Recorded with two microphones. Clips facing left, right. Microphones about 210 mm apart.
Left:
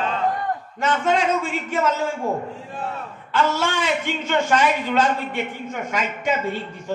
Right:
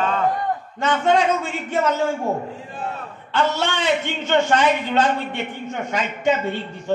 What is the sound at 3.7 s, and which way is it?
Speech, 25° right (ahead or behind).